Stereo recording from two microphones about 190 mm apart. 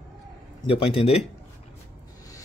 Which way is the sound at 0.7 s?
30° left (ahead or behind).